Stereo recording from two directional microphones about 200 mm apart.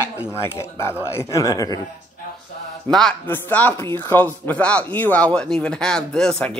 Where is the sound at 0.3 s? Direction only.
10° left (ahead or behind).